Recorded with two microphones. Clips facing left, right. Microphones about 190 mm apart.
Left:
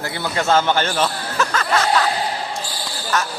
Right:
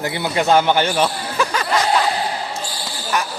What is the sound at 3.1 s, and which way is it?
Basketball bounce, 15° right (ahead or behind).